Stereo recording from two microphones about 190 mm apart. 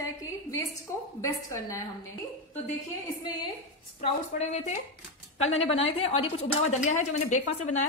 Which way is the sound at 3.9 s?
35° left (ahead or behind).